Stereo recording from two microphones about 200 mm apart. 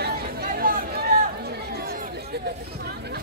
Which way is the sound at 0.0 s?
50° right (ahead or behind).